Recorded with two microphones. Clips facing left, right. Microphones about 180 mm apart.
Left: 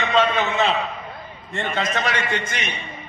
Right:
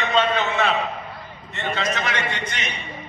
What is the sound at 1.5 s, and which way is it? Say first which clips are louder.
Speech: left 2 dB; 50° left (ahead or behind).